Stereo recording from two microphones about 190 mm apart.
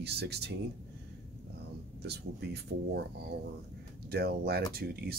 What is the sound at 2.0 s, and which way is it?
Speech, 60° right (ahead or behind).